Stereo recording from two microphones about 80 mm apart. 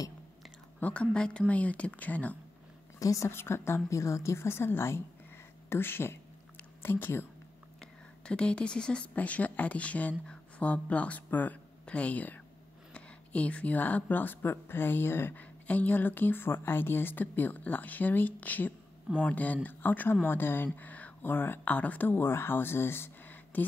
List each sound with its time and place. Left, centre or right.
0.7 s speech: centre
3.0 s speech: left
3.3 s a woman's voice: left
7.8 s a woman's voice: centre; by 15.4 s left
15.6 s a woman's voice: centre